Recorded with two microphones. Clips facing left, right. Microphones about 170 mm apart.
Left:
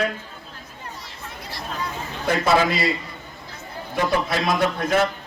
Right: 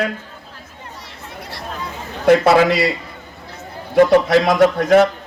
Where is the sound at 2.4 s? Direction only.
75° right (ahead or behind).